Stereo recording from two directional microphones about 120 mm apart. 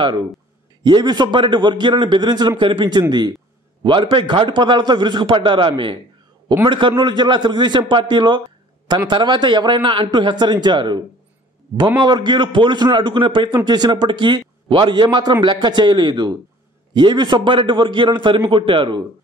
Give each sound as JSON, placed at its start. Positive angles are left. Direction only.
{"t": 0.8, "sound": "a man's voice", "side_deg": -35}